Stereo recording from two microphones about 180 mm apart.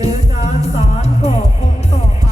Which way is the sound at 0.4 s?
35° left (ahead or behind).